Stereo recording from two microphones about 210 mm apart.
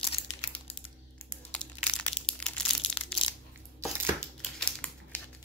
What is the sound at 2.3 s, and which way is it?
Crushing, 25° left (ahead or behind).